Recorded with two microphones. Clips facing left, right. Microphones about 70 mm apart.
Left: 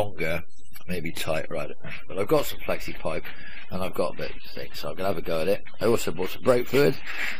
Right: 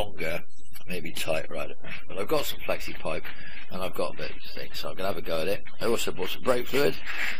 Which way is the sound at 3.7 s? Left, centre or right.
Left.